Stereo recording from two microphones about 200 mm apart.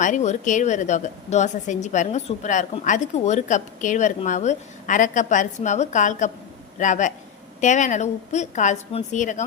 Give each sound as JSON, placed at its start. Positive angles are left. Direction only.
{"t": 0.0, "sound": "a woman's voice", "side_deg": 35}